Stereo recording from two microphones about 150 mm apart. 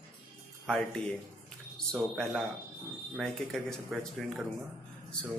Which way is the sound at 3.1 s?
Centre (ahead or behind).